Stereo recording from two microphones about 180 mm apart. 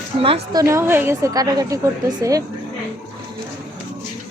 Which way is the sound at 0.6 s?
15° right (ahead or behind).